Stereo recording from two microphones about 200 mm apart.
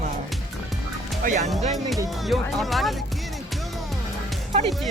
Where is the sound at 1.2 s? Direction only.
40° right (ahead or behind).